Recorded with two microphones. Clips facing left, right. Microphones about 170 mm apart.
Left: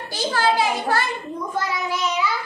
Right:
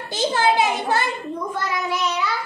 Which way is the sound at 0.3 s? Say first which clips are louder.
Right 1 dB; 20° right (ahead or behind).